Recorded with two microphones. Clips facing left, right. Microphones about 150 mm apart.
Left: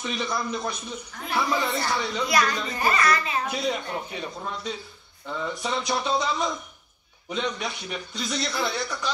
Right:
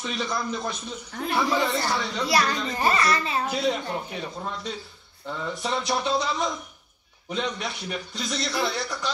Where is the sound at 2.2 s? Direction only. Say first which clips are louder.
Right 1 dB; 30° right (ahead or behind).